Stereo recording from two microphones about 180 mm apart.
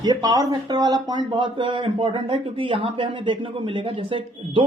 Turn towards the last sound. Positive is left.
turn(degrees=-30)  # may be behind; listen again after turning